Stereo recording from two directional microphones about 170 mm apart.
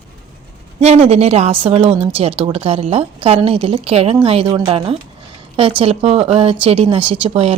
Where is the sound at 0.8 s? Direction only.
40° right (ahead or behind).